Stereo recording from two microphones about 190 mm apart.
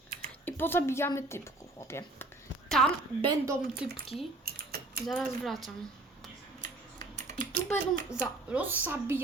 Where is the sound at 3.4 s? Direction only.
15° right (ahead or behind).